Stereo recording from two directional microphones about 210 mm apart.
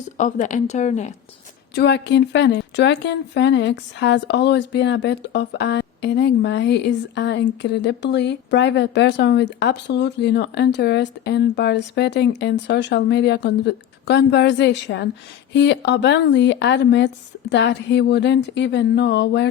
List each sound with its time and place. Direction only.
0.2 s a woman's voice: 35° left (ahead or behind)
1.7 s speech: 55° left (ahead or behind)